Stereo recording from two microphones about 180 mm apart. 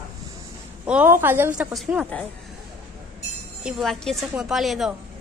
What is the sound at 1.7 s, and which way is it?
Speech, centre (ahead or behind).